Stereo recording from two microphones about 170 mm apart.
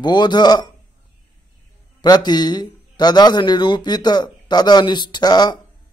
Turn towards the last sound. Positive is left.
turn(degrees=25)  # may be behind; listen again after turning